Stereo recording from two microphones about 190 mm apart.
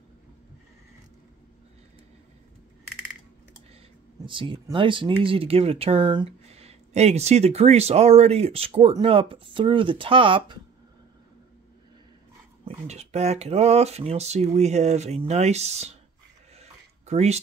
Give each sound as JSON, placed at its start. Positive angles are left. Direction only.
{"t": 4.3, "sound": "speech", "side_deg": -25}
{"t": 12.6, "sound": "speech", "side_deg": -35}
{"t": 16.5, "sound": "a sound", "side_deg": -35}